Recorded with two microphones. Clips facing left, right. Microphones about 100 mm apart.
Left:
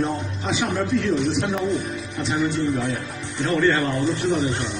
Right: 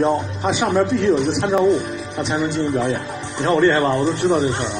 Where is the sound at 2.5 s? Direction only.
70° right (ahead or behind).